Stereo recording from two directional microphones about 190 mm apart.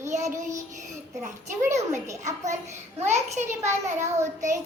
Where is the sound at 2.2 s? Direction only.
40° right (ahead or behind).